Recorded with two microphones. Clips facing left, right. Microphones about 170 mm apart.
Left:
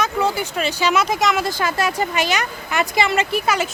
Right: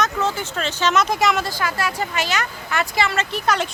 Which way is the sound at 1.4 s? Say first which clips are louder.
Left 3 dB; 20° left (ahead or behind).